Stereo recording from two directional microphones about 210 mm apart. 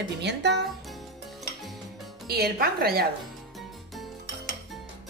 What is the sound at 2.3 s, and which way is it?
Speech, 45° right (ahead or behind).